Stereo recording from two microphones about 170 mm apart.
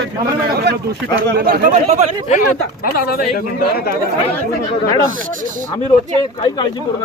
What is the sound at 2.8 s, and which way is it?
Speech, 60° left (ahead or behind).